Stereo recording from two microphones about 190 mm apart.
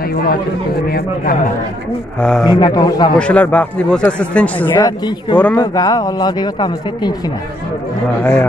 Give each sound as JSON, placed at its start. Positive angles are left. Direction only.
{"t": 2.4, "sound": "speech", "side_deg": 20}
{"t": 3.2, "sound": "speech", "side_deg": 5}
{"t": 4.7, "sound": "speech", "side_deg": 20}
{"t": 8.2, "sound": "speech", "side_deg": 10}